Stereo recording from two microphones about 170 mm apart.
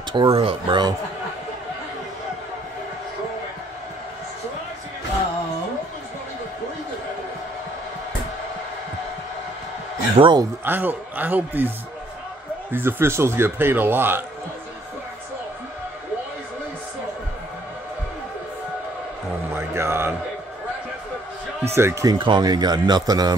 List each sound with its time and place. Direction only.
0.1 s a man's voice: 30° right (ahead or behind)
10.1 s a man's voice: 30° right (ahead or behind)
10.6 s speech: 10° right (ahead or behind)
12.7 s speech: 15° right (ahead or behind)
19.5 s a sound: 15° right (ahead or behind)
21.6 s a man's voice: 15° right (ahead or behind)